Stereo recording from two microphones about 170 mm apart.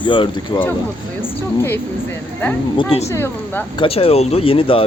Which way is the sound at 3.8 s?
35° left (ahead or behind).